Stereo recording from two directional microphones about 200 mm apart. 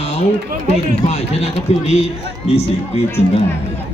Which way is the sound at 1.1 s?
35° left (ahead or behind).